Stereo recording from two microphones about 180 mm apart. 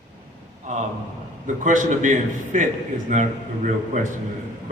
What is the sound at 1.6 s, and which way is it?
A woman's voice, 45° right (ahead or behind).